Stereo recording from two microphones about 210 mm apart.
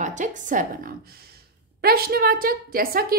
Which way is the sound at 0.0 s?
35° right (ahead or behind).